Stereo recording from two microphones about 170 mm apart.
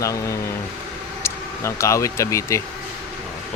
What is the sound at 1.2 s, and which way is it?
Speech, 15° left (ahead or behind).